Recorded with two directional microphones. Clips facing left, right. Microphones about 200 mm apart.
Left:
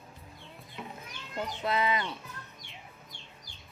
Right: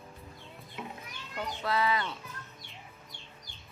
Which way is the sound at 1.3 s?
20° left (ahead or behind).